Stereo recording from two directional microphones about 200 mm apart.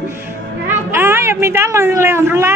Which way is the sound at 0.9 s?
10° right (ahead or behind).